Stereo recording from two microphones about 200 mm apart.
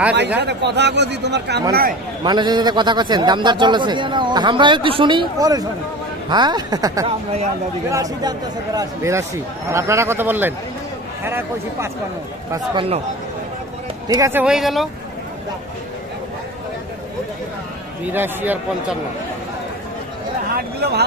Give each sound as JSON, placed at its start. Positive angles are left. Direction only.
{"t": 0.4, "sound": "speech", "side_deg": -55}
{"t": 1.7, "sound": "speech", "side_deg": -45}
{"t": 2.2, "sound": "a man's voice", "side_deg": -20}
{"t": 12.5, "sound": "a man's voice", "side_deg": -25}
{"t": 14.0, "sound": "speech", "side_deg": -15}
{"t": 14.4, "sound": "speech", "side_deg": 0}
{"t": 18.0, "sound": "speech", "side_deg": -10}
{"t": 20.5, "sound": "speech", "side_deg": -50}